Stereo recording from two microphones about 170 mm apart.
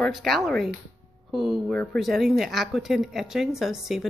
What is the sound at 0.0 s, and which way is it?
Speech, centre (ahead or behind).